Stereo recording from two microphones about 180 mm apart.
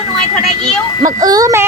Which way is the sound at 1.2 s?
20° right (ahead or behind).